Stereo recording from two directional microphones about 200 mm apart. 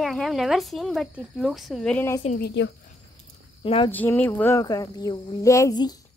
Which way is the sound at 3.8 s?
10° left (ahead or behind).